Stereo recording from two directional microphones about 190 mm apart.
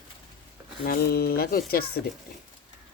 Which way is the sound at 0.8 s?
55° left (ahead or behind).